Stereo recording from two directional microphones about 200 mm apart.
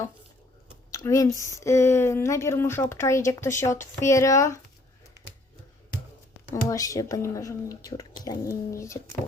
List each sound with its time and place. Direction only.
0.9 s speech: 15° left (ahead or behind)
6.5 s speech: 15° left (ahead or behind)